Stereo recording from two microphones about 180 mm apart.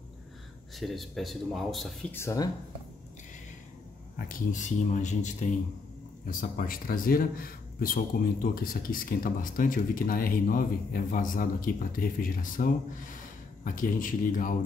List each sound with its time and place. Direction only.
0.7 s speech: centre (ahead or behind)
2.1 s speech: 20° left (ahead or behind)
4.3 s speech: 45° left (ahead or behind)